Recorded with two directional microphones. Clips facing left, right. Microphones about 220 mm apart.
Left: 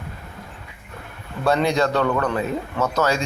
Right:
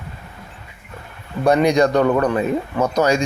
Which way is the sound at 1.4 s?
15° right (ahead or behind).